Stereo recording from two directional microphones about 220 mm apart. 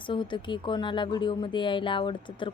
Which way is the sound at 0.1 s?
20° left (ahead or behind).